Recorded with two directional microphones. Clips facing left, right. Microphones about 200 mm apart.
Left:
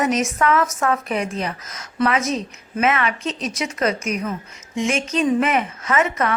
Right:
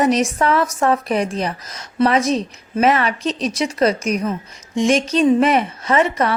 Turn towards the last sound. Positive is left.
turn(degrees=-35)  # may be behind; listen again after turning